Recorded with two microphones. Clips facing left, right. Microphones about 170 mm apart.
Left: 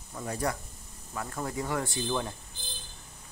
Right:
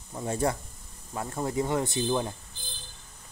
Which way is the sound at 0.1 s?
25° right (ahead or behind).